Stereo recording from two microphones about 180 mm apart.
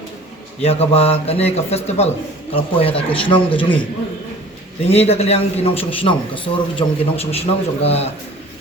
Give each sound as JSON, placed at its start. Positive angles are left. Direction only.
{"t": 0.6, "sound": "a man's voice", "side_deg": 35}
{"t": 4.9, "sound": "a man's voice", "side_deg": 35}